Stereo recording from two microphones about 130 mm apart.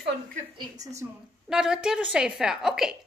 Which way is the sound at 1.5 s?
5° right (ahead or behind).